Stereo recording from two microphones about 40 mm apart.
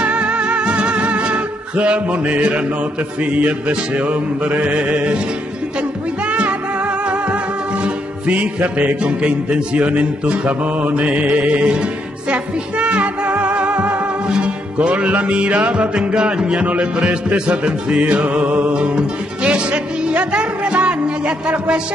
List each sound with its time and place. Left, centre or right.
0.0 s music: right
7.8 s music: right
18.8 s music: right